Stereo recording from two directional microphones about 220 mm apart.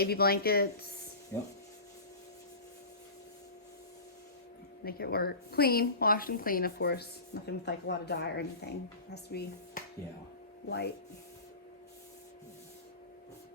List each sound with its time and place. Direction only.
0.0 s a woman's voice: 45° left (ahead or behind)
1.3 s speech: 10° left (ahead or behind)
4.8 s a woman's voice: 45° left (ahead or behind)